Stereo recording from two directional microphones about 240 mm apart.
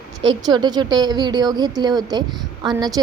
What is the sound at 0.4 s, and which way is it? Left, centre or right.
A woman's voice, centre.